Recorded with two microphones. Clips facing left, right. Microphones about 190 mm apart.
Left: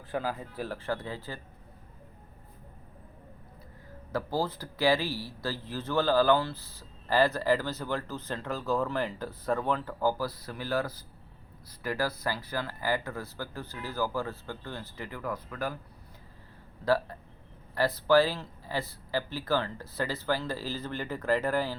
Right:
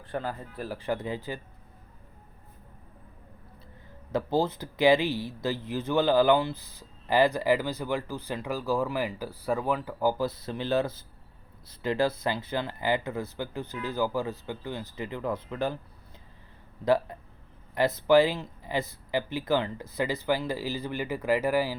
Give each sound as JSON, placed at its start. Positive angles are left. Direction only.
{"t": 0.1, "sound": "speech", "side_deg": 5}
{"t": 0.7, "sound": "speech", "side_deg": -15}
{"t": 4.1, "sound": "speech", "side_deg": -20}
{"t": 16.8, "sound": "speech", "side_deg": -20}